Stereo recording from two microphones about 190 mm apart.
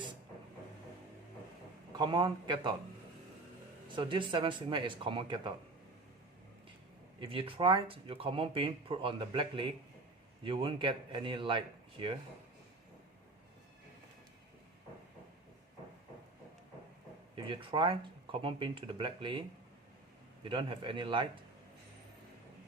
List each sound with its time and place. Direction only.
1.9 s speech: 20° right (ahead or behind)
3.9 s speech: 25° right (ahead or behind)
7.2 s speech: 25° right (ahead or behind)
17.3 s speech: 25° right (ahead or behind)